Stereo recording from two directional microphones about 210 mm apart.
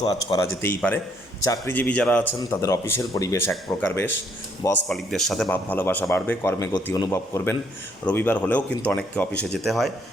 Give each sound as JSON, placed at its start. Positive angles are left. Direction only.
{"t": 0.0, "sound": "speech", "side_deg": 20}